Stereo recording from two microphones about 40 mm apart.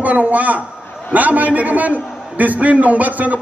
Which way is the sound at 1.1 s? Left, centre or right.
Right.